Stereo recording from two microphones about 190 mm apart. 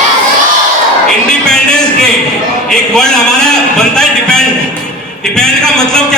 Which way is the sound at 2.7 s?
5° left (ahead or behind).